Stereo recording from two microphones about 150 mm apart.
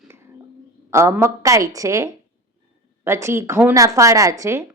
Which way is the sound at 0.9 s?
20° right (ahead or behind).